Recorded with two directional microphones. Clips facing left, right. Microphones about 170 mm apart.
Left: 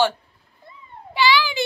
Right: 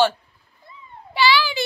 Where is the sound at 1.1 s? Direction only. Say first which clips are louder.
Even; 15° left (ahead or behind).